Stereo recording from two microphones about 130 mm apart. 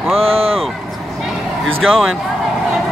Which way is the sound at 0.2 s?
50° right (ahead or behind).